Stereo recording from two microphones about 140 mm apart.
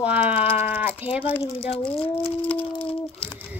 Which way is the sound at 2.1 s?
10° left (ahead or behind).